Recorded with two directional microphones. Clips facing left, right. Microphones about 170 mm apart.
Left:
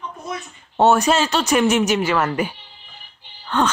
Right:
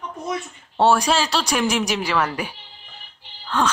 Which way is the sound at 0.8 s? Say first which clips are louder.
Left 2 dB; 5° left (ahead or behind).